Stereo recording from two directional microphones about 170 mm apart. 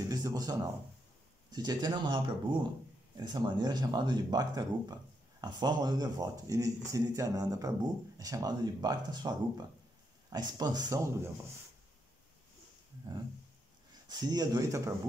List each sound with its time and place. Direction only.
0.1 s speech: 25° right (ahead or behind)
14.0 s speech: 25° right (ahead or behind)